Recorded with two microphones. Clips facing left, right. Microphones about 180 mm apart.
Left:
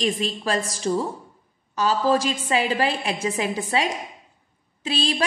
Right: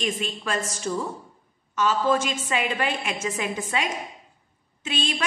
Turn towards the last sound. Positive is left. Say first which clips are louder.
# left 4 dB
turn(degrees=35)  # may be behind; listen again after turning